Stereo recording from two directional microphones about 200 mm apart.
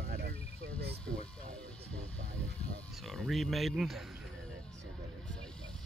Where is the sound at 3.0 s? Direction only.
Centre (ahead or behind).